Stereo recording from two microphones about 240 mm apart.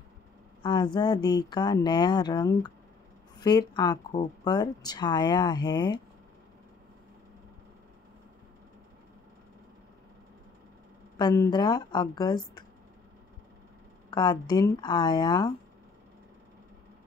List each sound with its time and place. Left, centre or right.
0.6 s a sound: centre
0.9 s speech: centre
11.1 s speech: centre
14.1 s speech: centre